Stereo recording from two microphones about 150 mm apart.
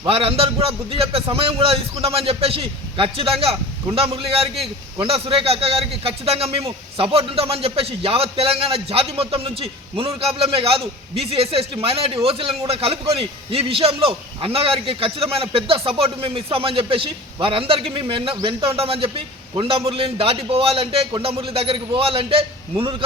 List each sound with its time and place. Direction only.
0.0 s a man's voice: 40° right (ahead or behind)